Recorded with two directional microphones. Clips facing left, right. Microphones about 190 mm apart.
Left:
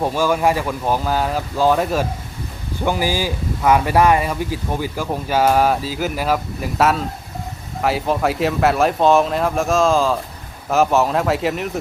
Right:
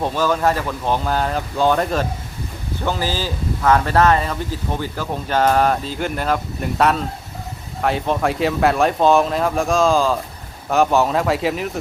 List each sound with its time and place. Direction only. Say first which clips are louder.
0.0 s speech: left 1 dB; 10° left (ahead or behind)